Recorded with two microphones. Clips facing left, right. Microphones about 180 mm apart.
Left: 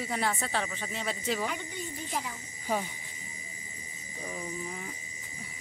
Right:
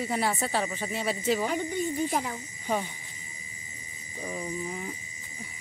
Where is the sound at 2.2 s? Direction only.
50° right (ahead or behind).